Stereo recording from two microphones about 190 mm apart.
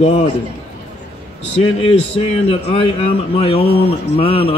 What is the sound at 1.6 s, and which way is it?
A man's voice, 30° left (ahead or behind).